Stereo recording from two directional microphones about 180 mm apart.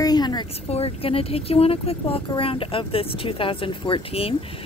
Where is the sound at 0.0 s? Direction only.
20° left (ahead or behind).